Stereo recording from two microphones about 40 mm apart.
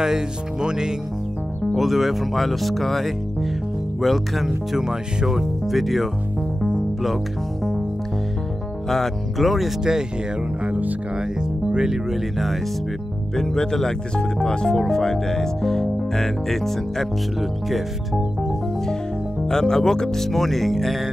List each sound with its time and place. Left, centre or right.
0.0 s speech: centre
1.8 s speech: centre
8.8 s speech: centre
10.6 s music: right
11.7 s speech: centre
13.4 s speech: centre
19.4 s speech: centre